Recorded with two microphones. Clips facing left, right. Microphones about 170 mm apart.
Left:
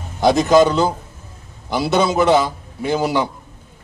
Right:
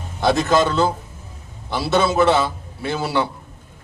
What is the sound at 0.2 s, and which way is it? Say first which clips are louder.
A man's voice: left 5 dB; 15° left (ahead or behind).